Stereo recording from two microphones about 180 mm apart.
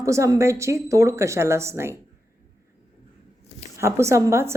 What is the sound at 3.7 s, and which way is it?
Speech, 15° right (ahead or behind).